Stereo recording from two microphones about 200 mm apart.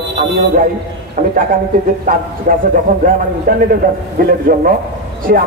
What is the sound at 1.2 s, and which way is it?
A man's voice, 40° right (ahead or behind).